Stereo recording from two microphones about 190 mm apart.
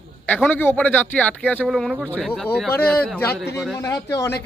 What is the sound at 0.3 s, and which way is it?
Speech, 10° left (ahead or behind).